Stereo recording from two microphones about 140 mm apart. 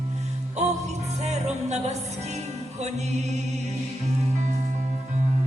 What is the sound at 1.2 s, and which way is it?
Music, 50° right (ahead or behind).